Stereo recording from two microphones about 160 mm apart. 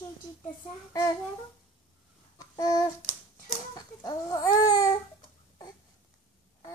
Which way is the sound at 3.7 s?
25° left (ahead or behind).